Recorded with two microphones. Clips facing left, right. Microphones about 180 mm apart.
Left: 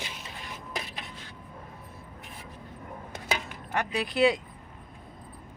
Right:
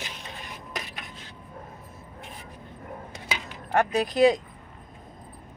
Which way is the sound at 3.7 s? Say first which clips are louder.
Right 6 dB; 45° right (ahead or behind).